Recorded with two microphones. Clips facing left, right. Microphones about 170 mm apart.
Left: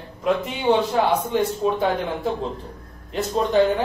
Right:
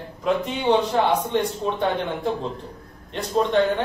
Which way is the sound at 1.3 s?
5° left (ahead or behind).